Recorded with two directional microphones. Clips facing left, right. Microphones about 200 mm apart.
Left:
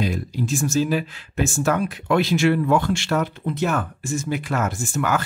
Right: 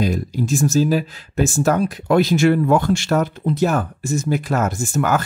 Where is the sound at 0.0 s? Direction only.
40° right (ahead or behind).